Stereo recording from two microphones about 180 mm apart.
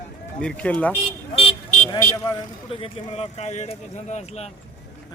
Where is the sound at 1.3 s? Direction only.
30° left (ahead or behind).